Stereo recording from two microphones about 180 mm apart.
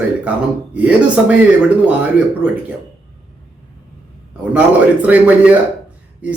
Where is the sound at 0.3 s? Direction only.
5° right (ahead or behind).